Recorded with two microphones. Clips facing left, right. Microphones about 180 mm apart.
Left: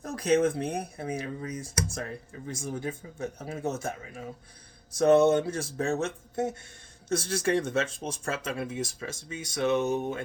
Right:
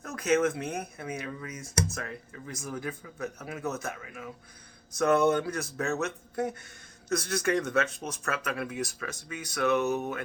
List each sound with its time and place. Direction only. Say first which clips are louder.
0.0 s speech: left 2 dB; 35° left (ahead or behind)